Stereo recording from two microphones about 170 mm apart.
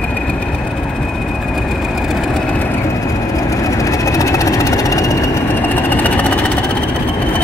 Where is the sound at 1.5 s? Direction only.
Centre (ahead or behind).